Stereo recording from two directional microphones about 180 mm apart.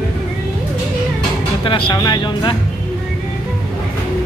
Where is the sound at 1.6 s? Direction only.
30° left (ahead or behind).